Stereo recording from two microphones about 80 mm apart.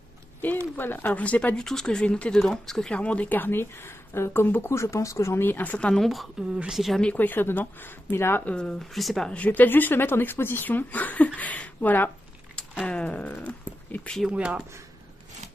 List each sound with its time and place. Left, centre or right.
0.4 s speech: left; by 3.0 s centre
3.0 s speech: centre
5.9 s a woman's voice: centre
7.0 s speech: centre
8.5 s a woman's voice: centre
9.3 s speech: centre
14.3 s speech: centre